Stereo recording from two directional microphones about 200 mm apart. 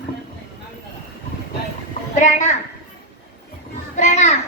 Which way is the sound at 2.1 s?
40° left (ahead or behind).